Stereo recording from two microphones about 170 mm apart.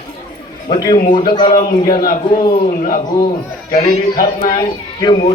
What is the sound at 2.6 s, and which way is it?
Speech, 55° left (ahead or behind).